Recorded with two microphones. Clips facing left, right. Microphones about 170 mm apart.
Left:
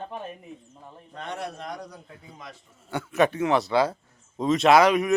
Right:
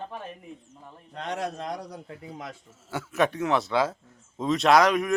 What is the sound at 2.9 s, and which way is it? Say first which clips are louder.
A man's voice: left 3 dB; centre (ahead or behind).